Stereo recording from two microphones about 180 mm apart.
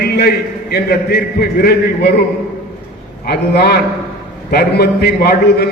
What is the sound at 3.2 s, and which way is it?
A man's voice, 60° left (ahead or behind).